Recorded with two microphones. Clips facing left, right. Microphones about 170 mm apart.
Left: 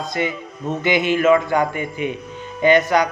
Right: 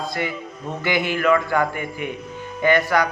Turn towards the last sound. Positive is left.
turn(degrees=20)  # may be behind; listen again after turning